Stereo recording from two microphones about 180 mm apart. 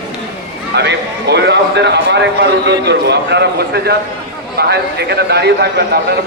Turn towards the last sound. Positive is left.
turn(degrees=-65)  # may be behind; listen again after turning